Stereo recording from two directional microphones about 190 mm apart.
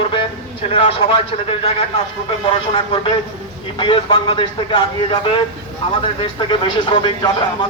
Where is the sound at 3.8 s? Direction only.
25° left (ahead or behind).